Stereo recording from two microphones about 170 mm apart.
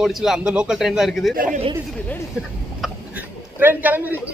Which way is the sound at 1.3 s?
55° right (ahead or behind).